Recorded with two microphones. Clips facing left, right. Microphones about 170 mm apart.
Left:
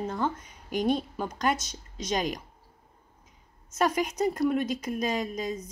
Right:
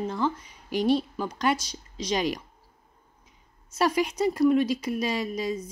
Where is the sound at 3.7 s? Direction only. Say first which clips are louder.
Right 2 dB; 45° left (ahead or behind).